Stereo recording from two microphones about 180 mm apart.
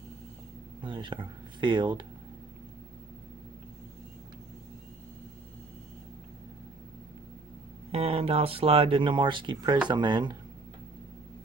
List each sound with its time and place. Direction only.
0.8 s speech: 25° right (ahead or behind)
7.9 s speech: 35° right (ahead or behind)